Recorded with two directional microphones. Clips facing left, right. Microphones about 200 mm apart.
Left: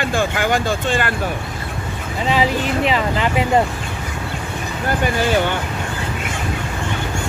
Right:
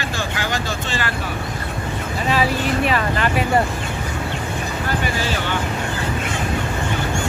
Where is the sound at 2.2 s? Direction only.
20° left (ahead or behind).